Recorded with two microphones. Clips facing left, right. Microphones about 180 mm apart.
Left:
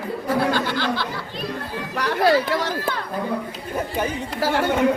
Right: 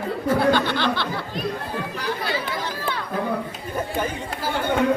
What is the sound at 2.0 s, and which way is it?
Chatter, 70° left (ahead or behind).